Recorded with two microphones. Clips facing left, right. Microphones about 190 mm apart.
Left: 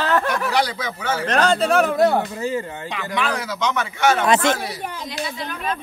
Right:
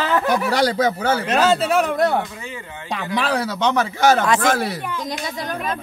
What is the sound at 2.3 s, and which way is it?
Speech, 40° left (ahead or behind).